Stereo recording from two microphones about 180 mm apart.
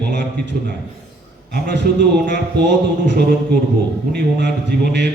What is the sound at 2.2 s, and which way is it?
A man's voice, 75° right (ahead or behind).